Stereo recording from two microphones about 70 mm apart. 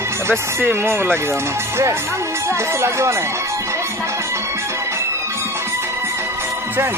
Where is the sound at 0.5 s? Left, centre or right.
Right.